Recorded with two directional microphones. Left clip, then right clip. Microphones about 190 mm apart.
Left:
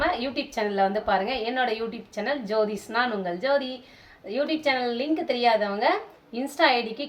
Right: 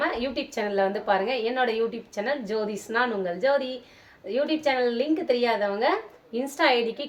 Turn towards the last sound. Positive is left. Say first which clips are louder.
# even
turn(degrees=-20)  # may be behind; listen again after turning